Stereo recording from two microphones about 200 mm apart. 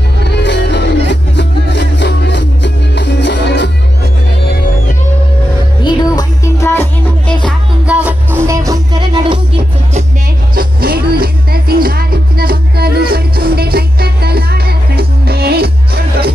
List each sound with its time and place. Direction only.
0.2 s music: 60° left (ahead or behind)
5.9 s music: 15° left (ahead or behind)
7.8 s music: 5° right (ahead or behind); by 10.0 s 25° right (ahead or behind)
10.5 s music: 45° right (ahead or behind)